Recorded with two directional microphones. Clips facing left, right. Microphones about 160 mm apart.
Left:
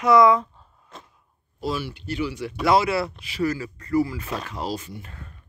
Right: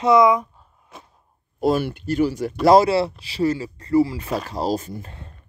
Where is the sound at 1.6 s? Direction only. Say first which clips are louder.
Right 8 dB; 50° right (ahead or behind).